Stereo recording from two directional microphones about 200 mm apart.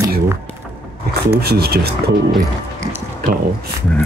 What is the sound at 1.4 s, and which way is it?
Speech, 50° right (ahead or behind).